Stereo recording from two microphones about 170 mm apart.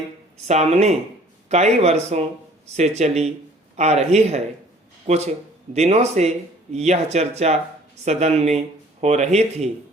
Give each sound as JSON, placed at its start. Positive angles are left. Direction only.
{"t": 0.4, "sound": "speech", "side_deg": -40}